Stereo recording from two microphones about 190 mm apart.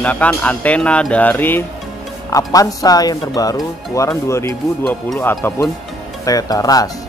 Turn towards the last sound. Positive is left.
turn(degrees=20)  # may be behind; listen again after turning